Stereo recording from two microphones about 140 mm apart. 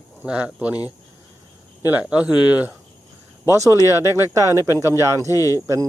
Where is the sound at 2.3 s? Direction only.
30° left (ahead or behind).